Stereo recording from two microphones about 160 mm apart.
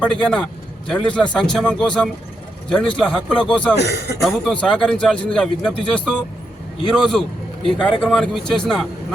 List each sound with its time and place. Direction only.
0.0 s a man's voice: 5° left (ahead or behind)
3.8 s a man's voice: 90° left
4.2 s a man's voice: centre (ahead or behind)